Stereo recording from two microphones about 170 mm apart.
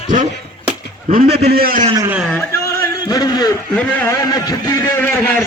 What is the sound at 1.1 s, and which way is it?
Speech, 55° right (ahead or behind).